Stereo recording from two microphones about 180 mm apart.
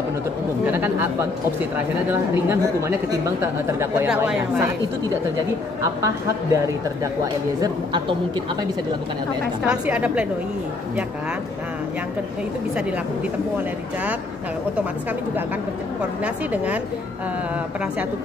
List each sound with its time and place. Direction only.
0.7 s speech: 10° right (ahead or behind)
2.0 s speech: 15° right (ahead or behind)
6.0 s a woman's voice: 15° right (ahead or behind)
9.7 s speech: 10° right (ahead or behind)